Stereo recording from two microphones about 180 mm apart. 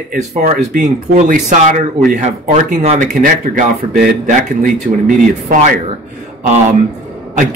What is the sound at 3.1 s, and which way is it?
Speech, 55° right (ahead or behind).